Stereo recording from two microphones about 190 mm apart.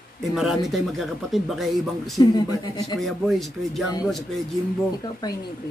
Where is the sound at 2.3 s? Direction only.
20° left (ahead or behind).